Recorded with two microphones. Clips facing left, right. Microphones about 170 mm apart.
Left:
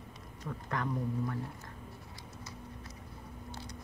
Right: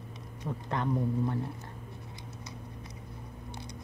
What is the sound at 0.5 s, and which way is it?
Speech, 25° right (ahead or behind).